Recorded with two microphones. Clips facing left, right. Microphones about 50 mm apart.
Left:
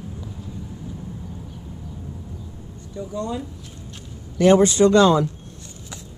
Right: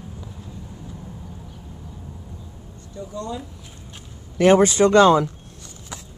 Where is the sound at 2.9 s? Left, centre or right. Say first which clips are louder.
Left 3 dB; centre.